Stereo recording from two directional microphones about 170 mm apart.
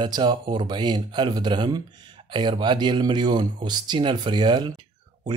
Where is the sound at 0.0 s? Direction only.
25° right (ahead or behind).